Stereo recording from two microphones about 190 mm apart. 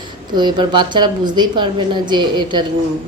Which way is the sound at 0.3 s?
25° right (ahead or behind).